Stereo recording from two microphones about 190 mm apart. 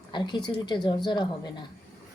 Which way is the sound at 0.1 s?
25° left (ahead or behind).